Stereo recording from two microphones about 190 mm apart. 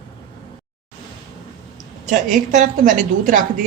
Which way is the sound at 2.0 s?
40° right (ahead or behind).